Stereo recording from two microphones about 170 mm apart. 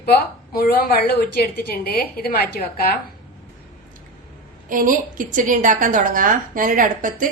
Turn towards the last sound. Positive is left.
turn(degrees=-50)  # may be behind; listen again after turning